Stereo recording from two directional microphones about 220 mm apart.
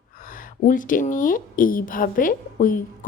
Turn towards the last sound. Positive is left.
turn(degrees=40)  # may be behind; listen again after turning